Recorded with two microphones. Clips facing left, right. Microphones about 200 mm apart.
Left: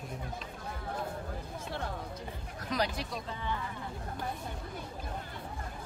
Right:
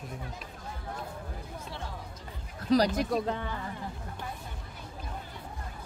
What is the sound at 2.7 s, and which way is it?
Speech, 40° right (ahead or behind).